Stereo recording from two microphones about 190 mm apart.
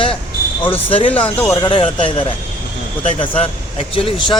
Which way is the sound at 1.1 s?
10° left (ahead or behind).